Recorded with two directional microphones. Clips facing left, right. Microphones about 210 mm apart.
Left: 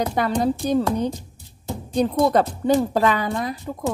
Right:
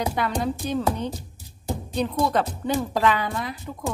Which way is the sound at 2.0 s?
40° left (ahead or behind).